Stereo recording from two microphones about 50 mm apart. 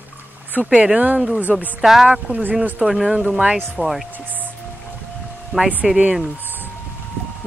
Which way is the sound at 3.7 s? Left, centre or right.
Centre.